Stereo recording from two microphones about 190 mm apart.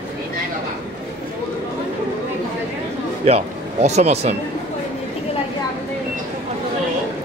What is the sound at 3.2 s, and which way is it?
Speech, 35° right (ahead or behind).